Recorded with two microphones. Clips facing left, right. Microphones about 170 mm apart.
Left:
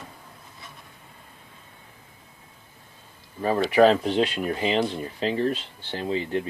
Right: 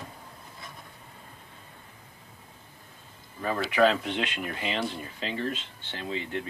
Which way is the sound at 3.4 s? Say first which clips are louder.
Left 6 dB; 30° left (ahead or behind).